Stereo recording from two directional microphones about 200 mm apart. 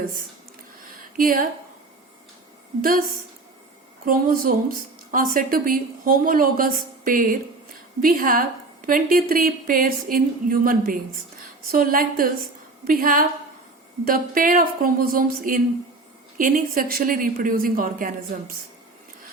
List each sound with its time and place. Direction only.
1.1 s speech: 45° right (ahead or behind)
4.0 s speech: 45° right (ahead or behind)